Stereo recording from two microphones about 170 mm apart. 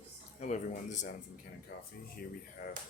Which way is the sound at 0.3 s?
45° left (ahead or behind).